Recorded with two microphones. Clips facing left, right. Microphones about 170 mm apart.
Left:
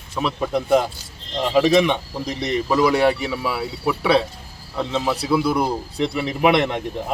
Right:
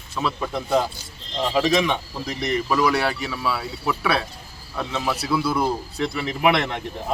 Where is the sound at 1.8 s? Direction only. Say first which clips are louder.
Left 3 dB; 20° left (ahead or behind).